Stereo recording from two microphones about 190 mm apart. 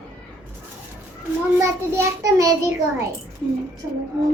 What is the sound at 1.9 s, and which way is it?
Child singing, 15° right (ahead or behind).